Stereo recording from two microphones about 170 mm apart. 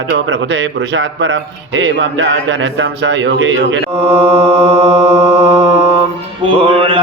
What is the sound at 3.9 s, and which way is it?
Mantra, 35° right (ahead or behind).